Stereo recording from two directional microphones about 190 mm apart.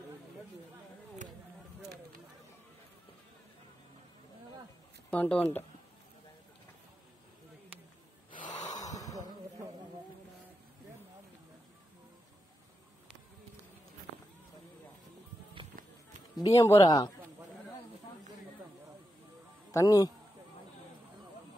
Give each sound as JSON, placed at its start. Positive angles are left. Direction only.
{"t": 5.1, "sound": "speech", "side_deg": 5}
{"t": 8.3, "sound": "gasp", "side_deg": 45}
{"t": 8.6, "sound": "gasp", "side_deg": 20}
{"t": 16.4, "sound": "speech", "side_deg": 15}
{"t": 19.7, "sound": "a man's voice", "side_deg": 20}